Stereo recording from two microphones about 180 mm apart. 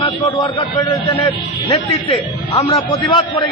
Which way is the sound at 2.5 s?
30° left (ahead or behind).